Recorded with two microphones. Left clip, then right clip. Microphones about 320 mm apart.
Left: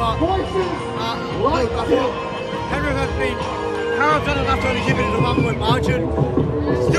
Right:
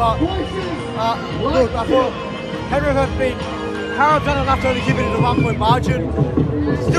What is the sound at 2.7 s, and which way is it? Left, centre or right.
Speech, centre.